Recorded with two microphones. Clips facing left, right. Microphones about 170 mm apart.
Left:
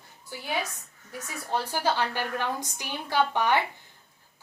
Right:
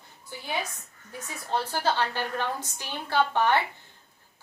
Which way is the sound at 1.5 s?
10° left (ahead or behind).